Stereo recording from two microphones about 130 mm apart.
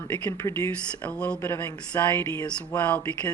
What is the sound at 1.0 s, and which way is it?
Speech, 10° left (ahead or behind).